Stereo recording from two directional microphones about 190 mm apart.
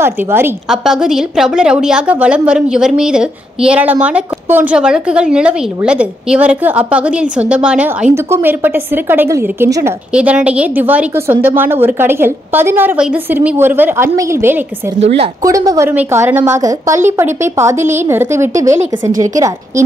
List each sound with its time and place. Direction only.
0.0 s a woman's voice: 10° right (ahead or behind)
15.0 s a woman's voice: 30° right (ahead or behind)
15.4 s a woman's voice: 20° right (ahead or behind)